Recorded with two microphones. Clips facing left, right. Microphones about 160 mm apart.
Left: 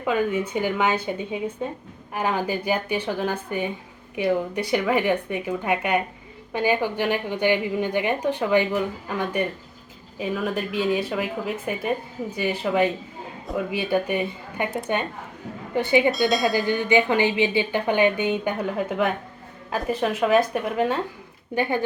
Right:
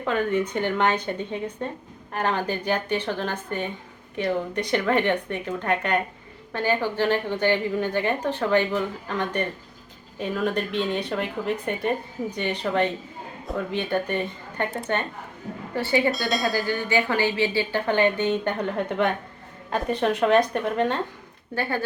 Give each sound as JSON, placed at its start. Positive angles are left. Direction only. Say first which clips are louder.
{"t": 0.0, "sound": "speech", "louder": "left 1 dB", "side_deg": 10}
{"t": 15.7, "sound": "speech", "louder": "left 3 dB", "side_deg": 15}
{"t": 21.5, "sound": "speech", "louder": "left 3 dB", "side_deg": 15}